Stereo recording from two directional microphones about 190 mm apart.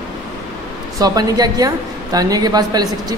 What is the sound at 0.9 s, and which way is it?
Speech, 20° right (ahead or behind).